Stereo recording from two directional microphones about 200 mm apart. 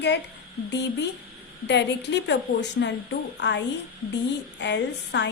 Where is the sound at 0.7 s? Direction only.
60° left (ahead or behind).